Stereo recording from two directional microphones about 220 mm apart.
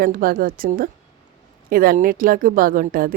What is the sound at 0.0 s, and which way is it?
A woman's voice, 40° right (ahead or behind).